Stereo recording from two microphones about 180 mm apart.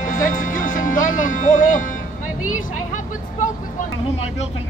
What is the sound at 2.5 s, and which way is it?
Vehicle, 45° left (ahead or behind).